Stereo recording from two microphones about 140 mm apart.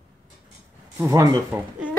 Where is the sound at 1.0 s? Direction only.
20° right (ahead or behind).